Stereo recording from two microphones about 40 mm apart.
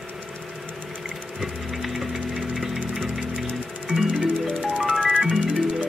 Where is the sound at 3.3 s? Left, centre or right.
Right.